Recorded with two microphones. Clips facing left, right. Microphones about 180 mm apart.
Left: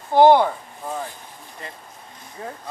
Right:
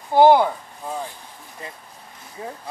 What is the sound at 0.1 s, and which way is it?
Speech, 5° right (ahead or behind).